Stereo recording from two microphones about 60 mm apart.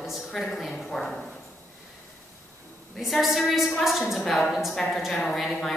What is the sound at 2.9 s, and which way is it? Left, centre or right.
A woman's voice, centre.